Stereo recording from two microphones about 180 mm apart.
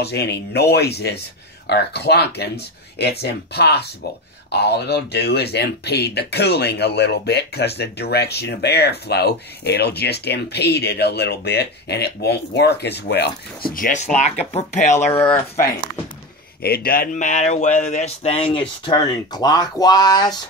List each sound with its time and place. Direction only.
0.0 s speech: 65° left (ahead or behind); by 15.1 s 40° left (ahead or behind)
16.6 s speech: 55° left (ahead or behind); by 20.3 s 20° left (ahead or behind)